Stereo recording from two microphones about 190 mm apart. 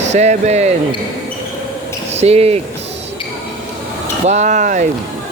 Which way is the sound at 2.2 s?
35° right (ahead or behind).